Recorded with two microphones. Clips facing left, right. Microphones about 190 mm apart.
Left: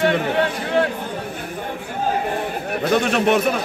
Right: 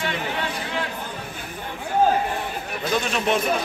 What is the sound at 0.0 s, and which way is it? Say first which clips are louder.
Speech: left 9 dB; 55° left (ahead or behind).